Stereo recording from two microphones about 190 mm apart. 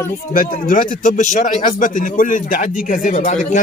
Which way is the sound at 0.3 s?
50° left (ahead or behind).